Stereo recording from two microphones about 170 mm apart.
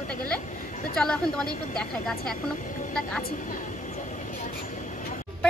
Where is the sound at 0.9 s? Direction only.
5° left (ahead or behind).